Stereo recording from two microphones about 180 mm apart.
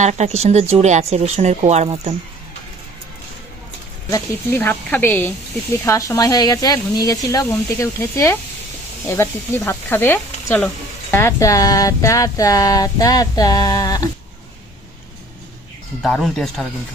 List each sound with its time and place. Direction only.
0.0 s speech: 40° right (ahead or behind)
4.1 s speech: 10° left (ahead or behind)
16.0 s speech: centre (ahead or behind)